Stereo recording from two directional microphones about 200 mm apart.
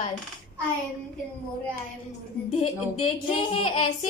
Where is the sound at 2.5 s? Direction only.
30° left (ahead or behind).